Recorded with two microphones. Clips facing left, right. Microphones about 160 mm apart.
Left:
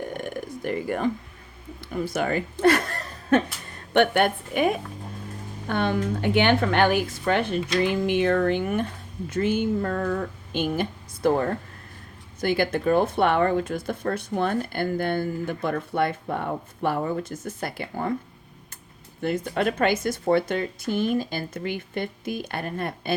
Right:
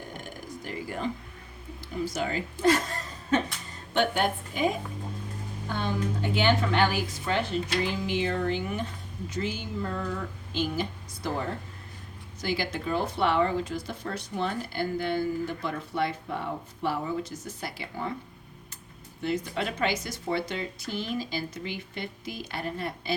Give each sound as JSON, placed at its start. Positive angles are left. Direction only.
{"t": 0.1, "sound": "a sound", "side_deg": 60}
{"t": 1.8, "sound": "a woman's voice", "side_deg": 60}
{"t": 19.2, "sound": "speech", "side_deg": 55}